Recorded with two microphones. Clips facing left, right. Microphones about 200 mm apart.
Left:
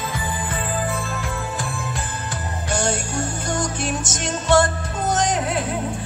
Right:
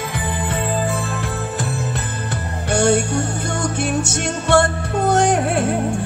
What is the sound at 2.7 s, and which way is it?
Music, 60° right (ahead or behind).